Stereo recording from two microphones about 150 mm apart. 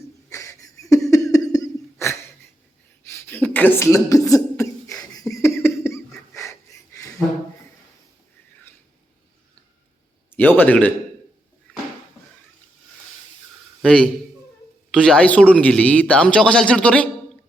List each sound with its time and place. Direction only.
0.3 s a sound: 20° left (ahead or behind)
3.1 s cough: 15° left (ahead or behind)
5.3 s wheeze: 15° left (ahead or behind)
10.3 s a man's voice: 10° left (ahead or behind)
13.8 s a man's voice: 5° left (ahead or behind)